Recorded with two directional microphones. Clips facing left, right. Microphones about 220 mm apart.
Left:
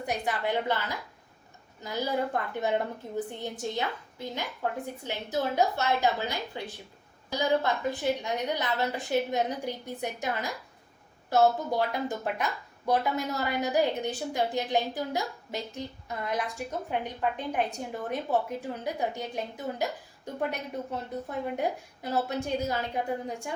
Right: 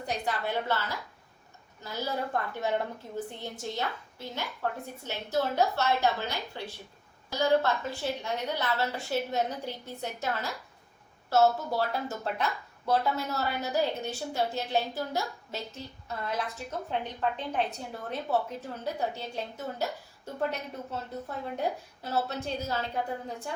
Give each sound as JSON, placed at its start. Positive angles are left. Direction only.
{"t": 0.0, "sound": "speech", "side_deg": 15}